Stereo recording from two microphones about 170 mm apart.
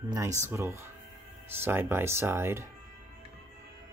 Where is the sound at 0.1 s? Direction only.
15° right (ahead or behind).